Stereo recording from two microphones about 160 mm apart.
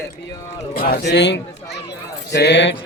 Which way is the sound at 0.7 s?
70° left (ahead or behind).